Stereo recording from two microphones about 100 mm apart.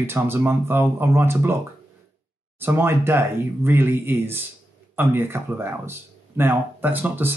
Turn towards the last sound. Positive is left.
turn(degrees=-20)  # may be behind; listen again after turning